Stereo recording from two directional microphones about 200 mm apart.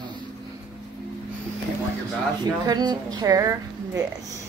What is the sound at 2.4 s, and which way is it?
Speech, 20° right (ahead or behind).